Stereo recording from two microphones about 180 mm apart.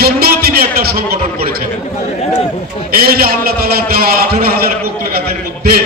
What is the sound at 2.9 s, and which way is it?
A man's voice, 55° right (ahead or behind).